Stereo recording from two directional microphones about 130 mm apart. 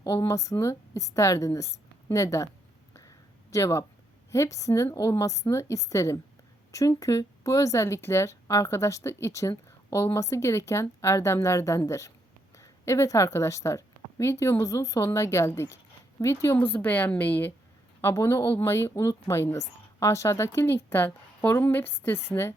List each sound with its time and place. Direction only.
0.0 s speech: 25° left (ahead or behind)
2.9 s a sound: 25° left (ahead or behind)
4.3 s a woman's voice: 25° left (ahead or behind)